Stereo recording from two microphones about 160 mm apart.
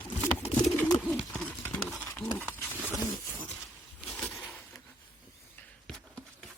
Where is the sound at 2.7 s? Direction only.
10° right (ahead or behind).